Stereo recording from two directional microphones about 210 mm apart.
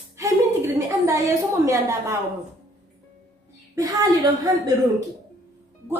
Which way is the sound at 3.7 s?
15° right (ahead or behind).